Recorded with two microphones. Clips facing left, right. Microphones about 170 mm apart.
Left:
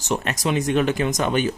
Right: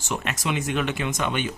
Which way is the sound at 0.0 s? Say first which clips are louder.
Left 5 dB; 35° left (ahead or behind).